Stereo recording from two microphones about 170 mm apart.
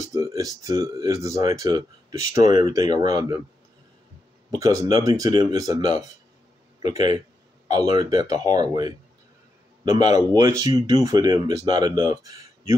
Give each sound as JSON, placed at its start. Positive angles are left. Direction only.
{"t": 0.0, "sound": "speech", "side_deg": -20}
{"t": 4.5, "sound": "speech", "side_deg": -20}
{"t": 10.1, "sound": "speech", "side_deg": -20}